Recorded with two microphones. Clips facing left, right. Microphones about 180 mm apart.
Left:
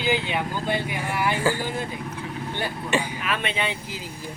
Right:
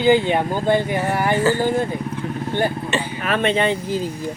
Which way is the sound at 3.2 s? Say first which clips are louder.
Right 8 dB; 50° right (ahead or behind).